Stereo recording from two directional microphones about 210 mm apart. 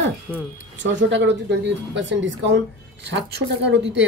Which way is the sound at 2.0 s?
60° right (ahead or behind).